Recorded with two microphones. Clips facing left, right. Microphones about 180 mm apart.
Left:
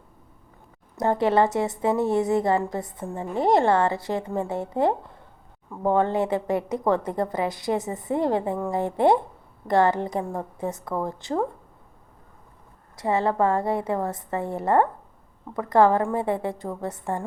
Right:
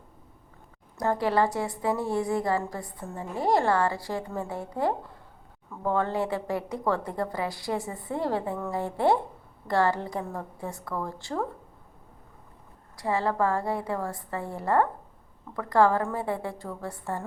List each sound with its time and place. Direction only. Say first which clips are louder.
0.9 s a woman's voice: left 4 dB; 20° left (ahead or behind)
13.0 s a woman's voice: left 4 dB; 20° left (ahead or behind)